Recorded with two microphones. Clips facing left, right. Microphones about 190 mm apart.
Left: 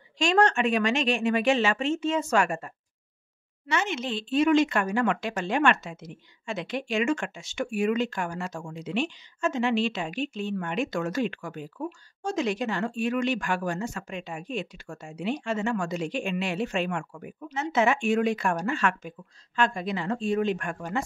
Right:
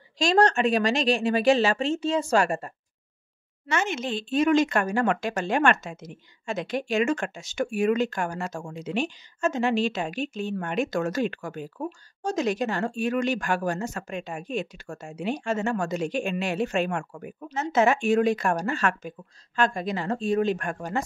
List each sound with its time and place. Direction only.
0.2 s speech: 35° right (ahead or behind)
3.6 s speech: 45° right (ahead or behind)